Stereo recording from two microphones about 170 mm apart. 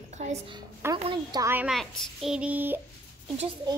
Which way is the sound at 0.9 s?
30° right (ahead or behind).